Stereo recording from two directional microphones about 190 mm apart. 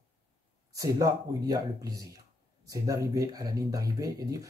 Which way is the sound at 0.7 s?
20° right (ahead or behind).